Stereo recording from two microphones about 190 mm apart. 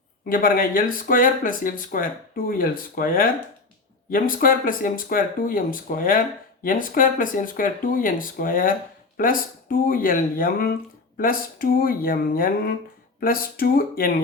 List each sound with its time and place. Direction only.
0.3 s speech: 50° left (ahead or behind)